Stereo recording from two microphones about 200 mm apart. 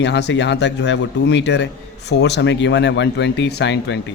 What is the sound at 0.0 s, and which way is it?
A man's voice, 60° left (ahead or behind).